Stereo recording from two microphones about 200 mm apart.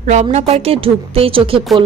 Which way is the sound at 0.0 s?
35° right (ahead or behind).